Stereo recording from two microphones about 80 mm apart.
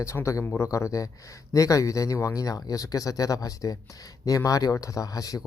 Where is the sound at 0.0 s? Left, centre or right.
Left.